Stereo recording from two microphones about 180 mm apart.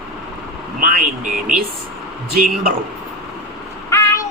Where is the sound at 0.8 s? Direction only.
45° right (ahead or behind).